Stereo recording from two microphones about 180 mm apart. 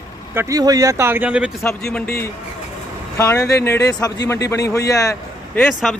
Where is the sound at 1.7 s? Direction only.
5° left (ahead or behind).